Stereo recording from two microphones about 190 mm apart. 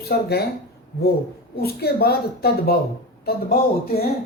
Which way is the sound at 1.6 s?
55° left (ahead or behind).